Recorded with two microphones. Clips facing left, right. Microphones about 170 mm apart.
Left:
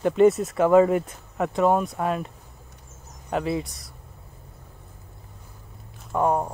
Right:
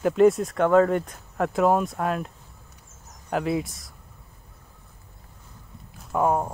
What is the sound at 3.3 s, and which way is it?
Speech, centre (ahead or behind).